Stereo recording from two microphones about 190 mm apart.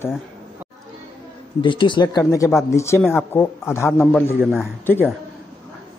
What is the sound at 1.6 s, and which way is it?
Speech, 25° left (ahead or behind).